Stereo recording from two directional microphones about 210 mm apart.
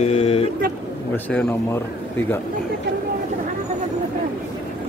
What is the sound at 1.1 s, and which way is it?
Speech, 5° left (ahead or behind).